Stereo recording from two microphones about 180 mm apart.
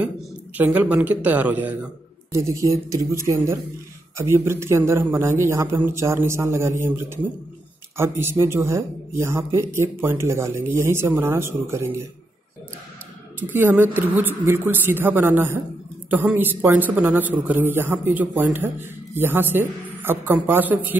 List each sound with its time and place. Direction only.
0.6 s a man's voice: 10° right (ahead or behind)
13.4 s a man's voice: 10° right (ahead or behind)